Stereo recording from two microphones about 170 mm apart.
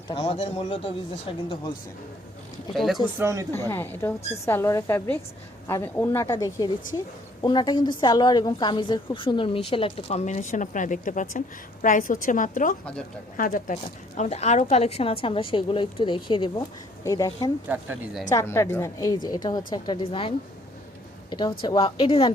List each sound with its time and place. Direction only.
0.1 s a woman's voice: 35° left (ahead or behind)
2.7 s speech: centre (ahead or behind)
3.2 s speech: 15° right (ahead or behind)
3.7 s a woman's voice: 15° left (ahead or behind)
17.7 s speech: 10° right (ahead or behind)
18.3 s a woman's voice: 15° left (ahead or behind); by 22.3 s 35° left (ahead or behind)